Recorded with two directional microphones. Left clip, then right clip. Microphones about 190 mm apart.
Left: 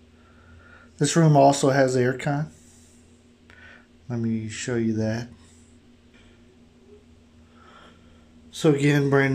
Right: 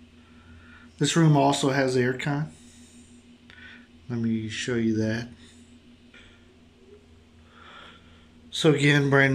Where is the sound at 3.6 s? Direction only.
25° left (ahead or behind).